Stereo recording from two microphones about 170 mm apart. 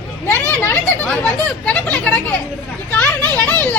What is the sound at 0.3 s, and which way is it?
Speech, 15° left (ahead or behind).